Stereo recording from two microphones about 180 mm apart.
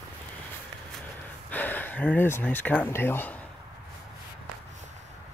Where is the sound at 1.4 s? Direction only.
10° left (ahead or behind).